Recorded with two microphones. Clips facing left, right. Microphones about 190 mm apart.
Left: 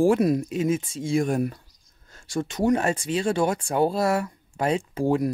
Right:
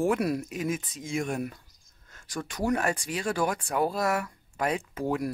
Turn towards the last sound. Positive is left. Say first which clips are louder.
# left 6 dB
turn(degrees=30)  # may be behind; listen again after turning